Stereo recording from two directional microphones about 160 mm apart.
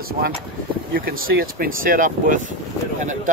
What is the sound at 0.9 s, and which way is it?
Speech, 65° right (ahead or behind).